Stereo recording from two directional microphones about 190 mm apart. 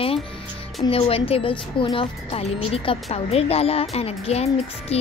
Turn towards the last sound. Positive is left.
turn(degrees=35)  # may be behind; listen again after turning